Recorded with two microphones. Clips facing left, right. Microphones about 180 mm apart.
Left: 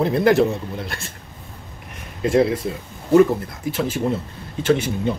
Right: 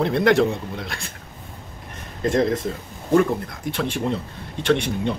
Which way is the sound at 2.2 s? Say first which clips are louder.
Left 2 dB; 10° left (ahead or behind).